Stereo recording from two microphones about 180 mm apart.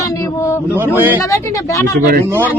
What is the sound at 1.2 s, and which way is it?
Speech, 15° left (ahead or behind).